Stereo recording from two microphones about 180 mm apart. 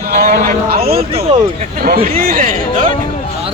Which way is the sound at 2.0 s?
50° right (ahead or behind).